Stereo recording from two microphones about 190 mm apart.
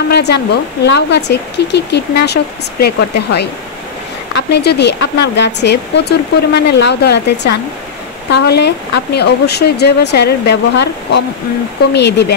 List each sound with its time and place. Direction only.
0.1 s speech: 60° left (ahead or behind)